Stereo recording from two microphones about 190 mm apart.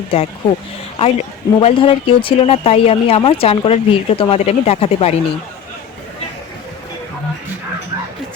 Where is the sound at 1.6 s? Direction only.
30° left (ahead or behind).